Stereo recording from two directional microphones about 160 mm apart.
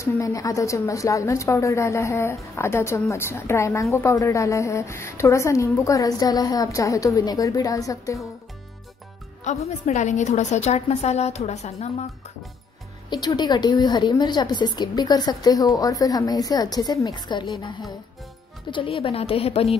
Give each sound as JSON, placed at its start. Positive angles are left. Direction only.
{"t": 0.0, "sound": "a woman's voice", "side_deg": 20}
{"t": 9.4, "sound": "a woman's voice", "side_deg": 45}
{"t": 13.1, "sound": "a woman's voice", "side_deg": 25}
{"t": 18.7, "sound": "a woman's voice", "side_deg": 30}